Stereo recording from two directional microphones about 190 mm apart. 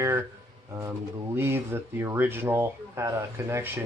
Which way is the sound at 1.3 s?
10° right (ahead or behind).